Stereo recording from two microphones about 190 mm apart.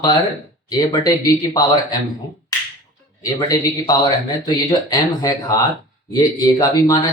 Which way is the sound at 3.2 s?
20° left (ahead or behind).